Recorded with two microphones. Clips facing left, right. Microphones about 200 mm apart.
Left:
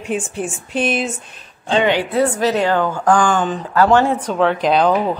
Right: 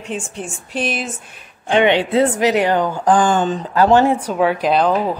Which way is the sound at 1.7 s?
20° right (ahead or behind).